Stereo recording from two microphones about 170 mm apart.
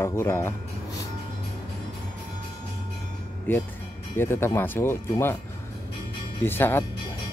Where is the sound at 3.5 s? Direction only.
10° left (ahead or behind).